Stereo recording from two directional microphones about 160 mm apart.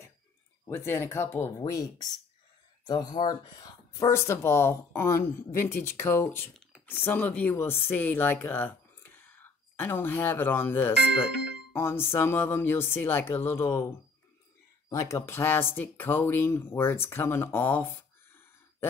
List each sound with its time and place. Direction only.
0.7 s speech: 15° left (ahead or behind)
14.9 s speech: 15° left (ahead or behind)